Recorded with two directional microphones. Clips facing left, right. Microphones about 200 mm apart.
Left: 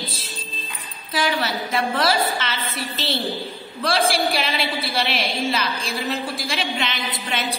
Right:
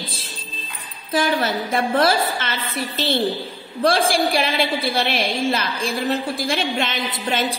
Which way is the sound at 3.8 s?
50° right (ahead or behind).